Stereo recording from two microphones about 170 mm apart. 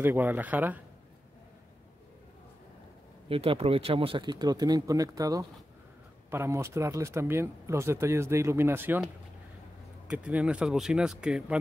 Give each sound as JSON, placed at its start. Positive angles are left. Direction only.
{"t": 0.0, "sound": "speech", "side_deg": -10}
{"t": 3.3, "sound": "speech", "side_deg": -35}
{"t": 10.0, "sound": "speech", "side_deg": -10}